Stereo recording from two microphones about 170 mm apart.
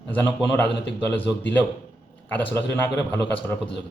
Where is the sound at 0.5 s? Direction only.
10° left (ahead or behind).